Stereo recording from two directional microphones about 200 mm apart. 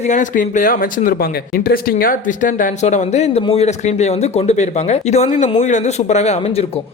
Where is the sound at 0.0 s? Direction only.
35° left (ahead or behind).